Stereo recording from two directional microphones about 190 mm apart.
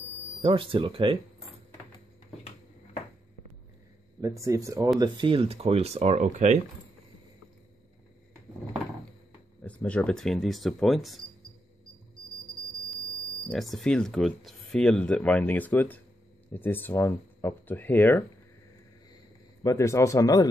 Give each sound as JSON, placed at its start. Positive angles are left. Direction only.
{"t": 0.4, "sound": "speech", "side_deg": -30}
{"t": 4.2, "sound": "speech", "side_deg": -15}
{"t": 9.6, "sound": "speech", "side_deg": 10}
{"t": 13.5, "sound": "speech", "side_deg": 0}
{"t": 19.6, "sound": "speech", "side_deg": 15}